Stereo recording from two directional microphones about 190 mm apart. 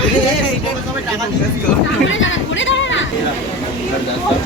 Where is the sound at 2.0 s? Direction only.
85° left.